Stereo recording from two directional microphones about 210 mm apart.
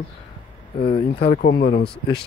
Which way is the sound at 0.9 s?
45° left (ahead or behind).